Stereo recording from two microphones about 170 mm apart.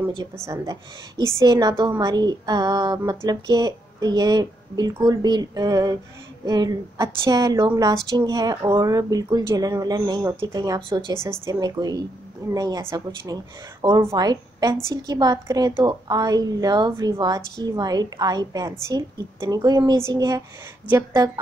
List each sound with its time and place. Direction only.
0.5 s a woman's voice: 20° right (ahead or behind)